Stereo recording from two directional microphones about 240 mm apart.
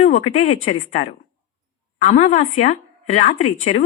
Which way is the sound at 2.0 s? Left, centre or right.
Left.